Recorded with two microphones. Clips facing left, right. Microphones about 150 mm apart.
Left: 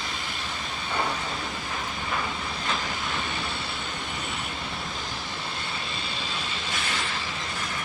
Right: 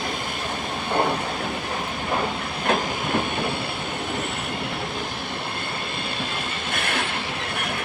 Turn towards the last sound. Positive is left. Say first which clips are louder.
# right 5 dB
turn(degrees=-60)  # may be behind; listen again after turning